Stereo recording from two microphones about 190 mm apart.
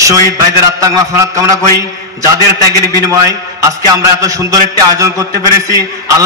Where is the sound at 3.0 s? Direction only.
15° right (ahead or behind).